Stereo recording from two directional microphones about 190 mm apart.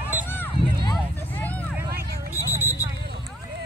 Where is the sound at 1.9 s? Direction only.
55° right (ahead or behind).